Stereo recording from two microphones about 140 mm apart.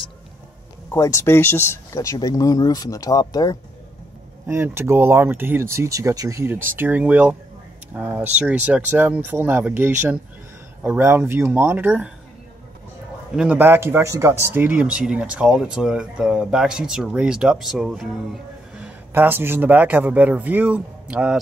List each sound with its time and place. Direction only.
0.9 s speech: 20° left (ahead or behind)
4.5 s speech: 15° right (ahead or behind)
13.4 s speech: 10° right (ahead or behind)